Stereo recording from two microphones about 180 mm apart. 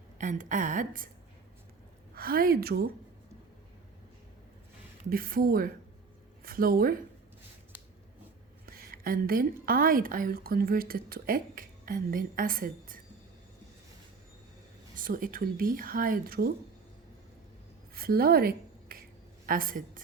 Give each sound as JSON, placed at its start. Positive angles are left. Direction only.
{"t": 0.2, "sound": "a woman's voice", "side_deg": -45}
{"t": 2.1, "sound": "a woman's voice", "side_deg": -55}
{"t": 5.0, "sound": "a woman's voice", "side_deg": -55}
{"t": 8.6, "sound": "a woman's voice", "side_deg": -55}
{"t": 14.9, "sound": "a woman's voice", "side_deg": -50}
{"t": 17.9, "sound": "a sound", "side_deg": -55}
{"t": 19.5, "sound": "a woman's voice", "side_deg": -50}